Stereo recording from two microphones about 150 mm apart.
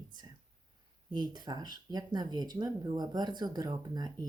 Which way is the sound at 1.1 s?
30° right (ahead or behind).